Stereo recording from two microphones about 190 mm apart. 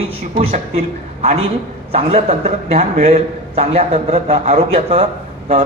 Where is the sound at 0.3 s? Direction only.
35° right (ahead or behind).